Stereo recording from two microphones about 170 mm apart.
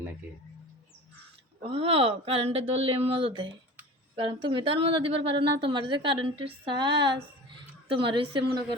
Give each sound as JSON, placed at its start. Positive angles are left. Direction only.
{"t": 1.6, "sound": "a woman's voice", "side_deg": -35}